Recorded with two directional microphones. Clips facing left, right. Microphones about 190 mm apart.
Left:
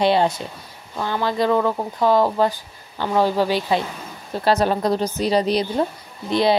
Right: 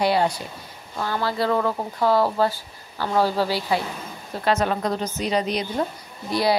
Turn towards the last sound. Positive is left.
turn(degrees=20)  # may be behind; listen again after turning